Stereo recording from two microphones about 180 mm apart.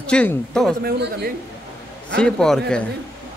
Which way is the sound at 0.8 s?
60° right (ahead or behind).